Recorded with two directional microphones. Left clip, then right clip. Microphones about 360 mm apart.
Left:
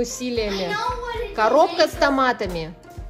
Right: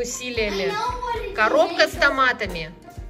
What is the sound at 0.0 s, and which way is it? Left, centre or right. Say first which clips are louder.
A woman's voice: left 1 dB; centre.